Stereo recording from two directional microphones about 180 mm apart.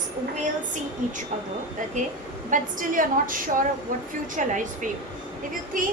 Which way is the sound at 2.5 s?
50° right (ahead or behind).